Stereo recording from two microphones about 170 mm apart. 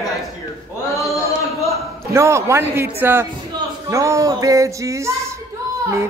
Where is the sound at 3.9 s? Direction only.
20° right (ahead or behind).